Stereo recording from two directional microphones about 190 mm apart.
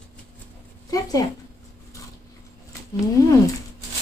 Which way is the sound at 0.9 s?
20° left (ahead or behind).